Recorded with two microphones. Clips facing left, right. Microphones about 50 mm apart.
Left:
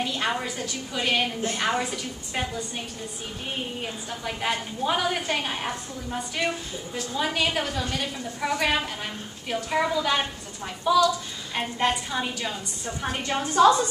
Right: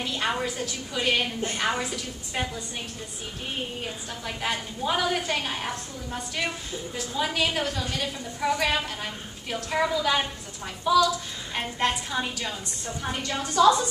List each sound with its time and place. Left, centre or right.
0.0 s a woman's voice: centre
3.8 s a woman's voice: centre
12.8 s a woman's voice: left